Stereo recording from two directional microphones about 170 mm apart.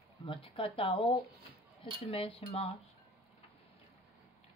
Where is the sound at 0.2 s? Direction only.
30° left (ahead or behind).